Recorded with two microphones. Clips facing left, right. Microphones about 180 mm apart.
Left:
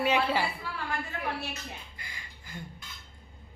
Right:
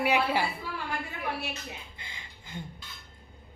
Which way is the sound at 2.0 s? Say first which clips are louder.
Even; 25° right (ahead or behind).